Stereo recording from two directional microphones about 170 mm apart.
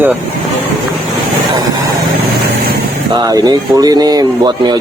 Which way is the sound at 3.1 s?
25° right (ahead or behind).